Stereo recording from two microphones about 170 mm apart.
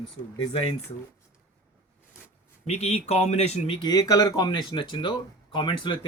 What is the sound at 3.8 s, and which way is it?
Speech, 20° left (ahead or behind).